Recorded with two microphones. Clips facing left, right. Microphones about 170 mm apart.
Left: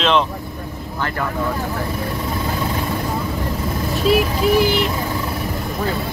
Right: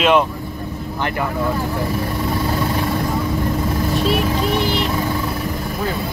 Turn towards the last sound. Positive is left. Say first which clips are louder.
# left 3 dB
turn(degrees=5)  # may be behind; listen again after turning